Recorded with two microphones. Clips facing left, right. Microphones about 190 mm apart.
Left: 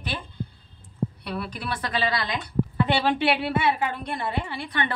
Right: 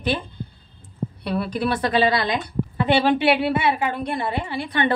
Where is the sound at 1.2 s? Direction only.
30° right (ahead or behind).